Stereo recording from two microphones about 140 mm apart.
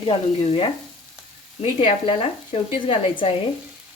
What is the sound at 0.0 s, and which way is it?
Speech, 40° left (ahead or behind).